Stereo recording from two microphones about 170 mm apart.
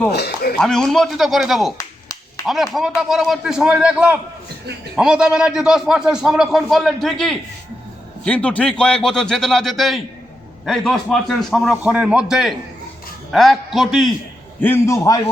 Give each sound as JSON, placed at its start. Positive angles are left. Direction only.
{"t": 0.1, "sound": "speech", "side_deg": 70}
{"t": 0.6, "sound": "speech", "side_deg": 5}
{"t": 1.8, "sound": "clapping", "side_deg": 20}
{"t": 2.5, "sound": "speech", "side_deg": 0}
{"t": 14.6, "sound": "a man's voice", "side_deg": 15}